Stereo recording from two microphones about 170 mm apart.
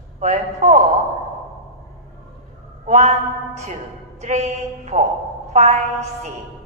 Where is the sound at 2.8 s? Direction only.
40° right (ahead or behind).